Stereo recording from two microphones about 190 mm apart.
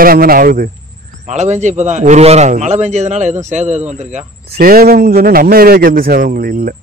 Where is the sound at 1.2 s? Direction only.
35° right (ahead or behind).